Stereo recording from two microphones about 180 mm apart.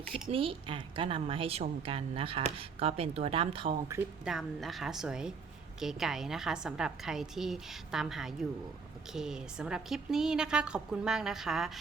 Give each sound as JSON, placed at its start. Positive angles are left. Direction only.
{"t": 0.1, "sound": "speech", "side_deg": -30}
{"t": 4.3, "sound": "a woman's voice", "side_deg": 0}